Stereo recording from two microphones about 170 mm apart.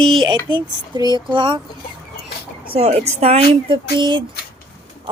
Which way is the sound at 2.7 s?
40° right (ahead or behind).